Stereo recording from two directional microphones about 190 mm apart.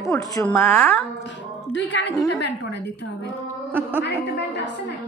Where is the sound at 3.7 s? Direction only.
10° right (ahead or behind).